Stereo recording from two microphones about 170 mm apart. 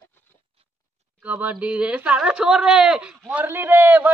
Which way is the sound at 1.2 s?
10° right (ahead or behind).